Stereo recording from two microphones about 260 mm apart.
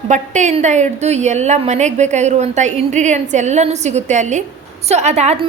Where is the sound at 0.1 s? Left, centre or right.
Right.